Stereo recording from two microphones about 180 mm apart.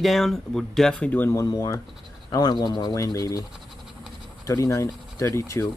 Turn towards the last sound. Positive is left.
turn(degrees=15)  # may be behind; listen again after turning